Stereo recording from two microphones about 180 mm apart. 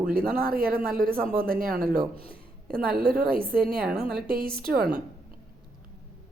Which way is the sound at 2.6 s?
55° right (ahead or behind).